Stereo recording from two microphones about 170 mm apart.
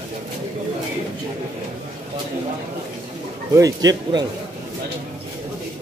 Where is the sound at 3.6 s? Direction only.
20° right (ahead or behind).